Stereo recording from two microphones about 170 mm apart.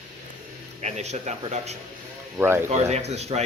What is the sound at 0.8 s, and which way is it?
Speech, 40° right (ahead or behind).